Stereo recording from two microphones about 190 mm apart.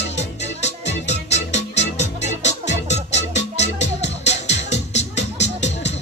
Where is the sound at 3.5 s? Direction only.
35° left (ahead or behind).